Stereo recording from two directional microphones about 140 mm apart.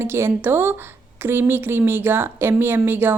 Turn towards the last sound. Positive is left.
turn(degrees=-15)  # may be behind; listen again after turning